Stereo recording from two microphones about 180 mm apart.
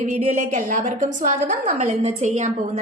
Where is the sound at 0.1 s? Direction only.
40° right (ahead or behind).